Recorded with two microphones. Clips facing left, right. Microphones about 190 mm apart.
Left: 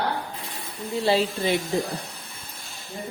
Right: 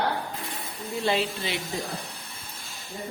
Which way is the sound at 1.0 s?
35° left (ahead or behind).